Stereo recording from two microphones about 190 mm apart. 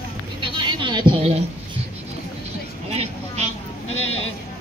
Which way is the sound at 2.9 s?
35° right (ahead or behind).